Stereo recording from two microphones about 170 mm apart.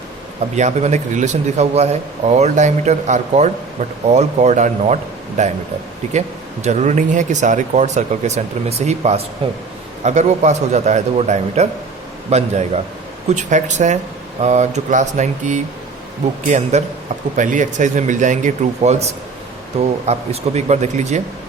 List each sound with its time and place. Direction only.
0.5 s a man's voice: 40° right (ahead or behind)